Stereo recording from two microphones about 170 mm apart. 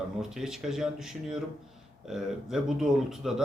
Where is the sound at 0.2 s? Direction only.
5° right (ahead or behind).